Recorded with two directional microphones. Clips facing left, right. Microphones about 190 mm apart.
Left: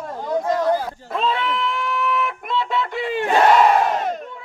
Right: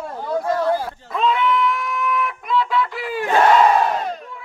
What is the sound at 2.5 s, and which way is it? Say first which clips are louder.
Music: right 3 dB; 25° left (ahead or behind).